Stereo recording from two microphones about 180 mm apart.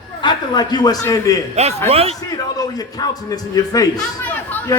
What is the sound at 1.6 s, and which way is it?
Speech, 35° right (ahead or behind).